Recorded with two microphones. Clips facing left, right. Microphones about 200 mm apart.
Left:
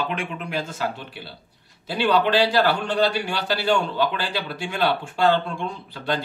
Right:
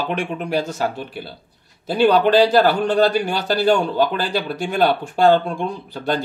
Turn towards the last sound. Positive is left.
turn(degrees=-45)  # may be behind; listen again after turning